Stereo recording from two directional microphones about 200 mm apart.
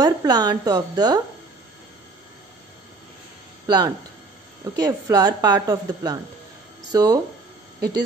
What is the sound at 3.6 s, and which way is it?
Speech, 20° right (ahead or behind).